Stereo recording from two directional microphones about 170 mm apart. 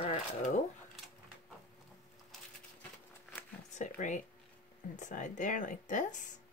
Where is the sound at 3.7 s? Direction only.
45° left (ahead or behind).